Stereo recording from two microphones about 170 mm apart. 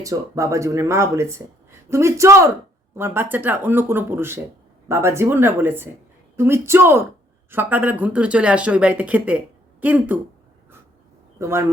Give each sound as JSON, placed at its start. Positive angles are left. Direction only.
{"t": 0.0, "sound": "speech", "side_deg": -20}
{"t": 11.3, "sound": "speech", "side_deg": -15}